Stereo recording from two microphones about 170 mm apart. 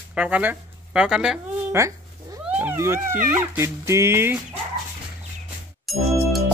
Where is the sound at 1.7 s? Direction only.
15° right (ahead or behind).